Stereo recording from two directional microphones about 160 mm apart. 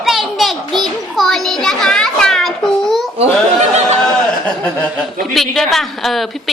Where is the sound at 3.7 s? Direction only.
45° right (ahead or behind).